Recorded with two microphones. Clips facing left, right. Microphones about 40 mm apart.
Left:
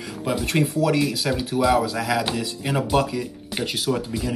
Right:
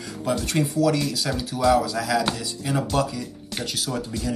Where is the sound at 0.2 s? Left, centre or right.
Centre.